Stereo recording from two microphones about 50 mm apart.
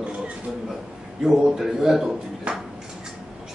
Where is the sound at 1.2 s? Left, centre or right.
Centre.